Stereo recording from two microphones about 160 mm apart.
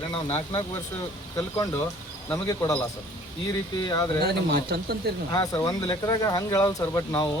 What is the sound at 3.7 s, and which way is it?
Speech, 25° left (ahead or behind).